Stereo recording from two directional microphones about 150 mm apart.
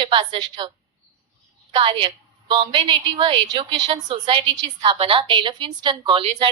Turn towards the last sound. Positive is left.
turn(degrees=-30)  # may be behind; listen again after turning